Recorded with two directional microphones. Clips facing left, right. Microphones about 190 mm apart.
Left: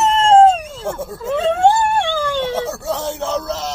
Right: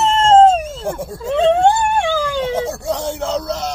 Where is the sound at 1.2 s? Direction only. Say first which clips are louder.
Right 4 dB; 30° right (ahead or behind).